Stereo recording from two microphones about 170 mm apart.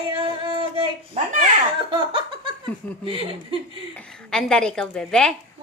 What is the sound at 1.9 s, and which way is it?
Laughter, 30° right (ahead or behind).